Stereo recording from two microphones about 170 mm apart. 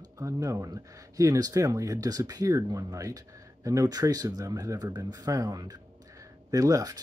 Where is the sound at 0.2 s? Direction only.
20° right (ahead or behind).